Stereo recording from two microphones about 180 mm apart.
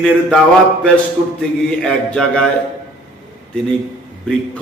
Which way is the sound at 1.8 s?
5° left (ahead or behind).